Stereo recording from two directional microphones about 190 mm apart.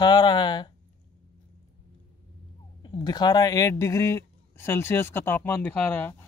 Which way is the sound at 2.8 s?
20° left (ahead or behind).